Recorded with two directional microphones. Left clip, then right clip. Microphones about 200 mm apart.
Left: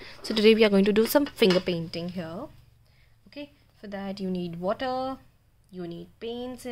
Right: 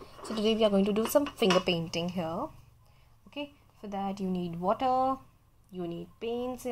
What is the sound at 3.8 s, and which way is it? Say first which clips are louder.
Speech: even; 25° left (ahead or behind).